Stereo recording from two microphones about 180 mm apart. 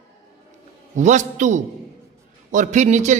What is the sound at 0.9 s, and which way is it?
Speech, 40° right (ahead or behind).